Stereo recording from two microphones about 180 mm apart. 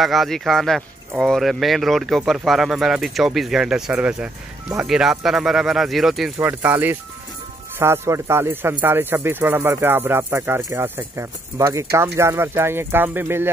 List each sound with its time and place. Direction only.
0.0 s speech: centre (ahead or behind)
6.3 s speech: 10° right (ahead or behind)